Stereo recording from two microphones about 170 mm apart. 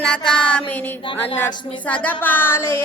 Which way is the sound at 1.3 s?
10° left (ahead or behind).